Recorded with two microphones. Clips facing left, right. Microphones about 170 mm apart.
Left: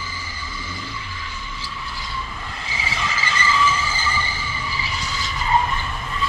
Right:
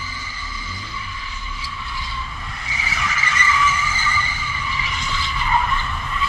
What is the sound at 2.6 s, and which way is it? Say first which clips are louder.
Skidding: even; 25° left (ahead or behind).